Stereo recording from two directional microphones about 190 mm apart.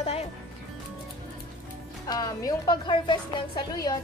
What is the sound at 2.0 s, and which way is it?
A woman's voice, 20° left (ahead or behind).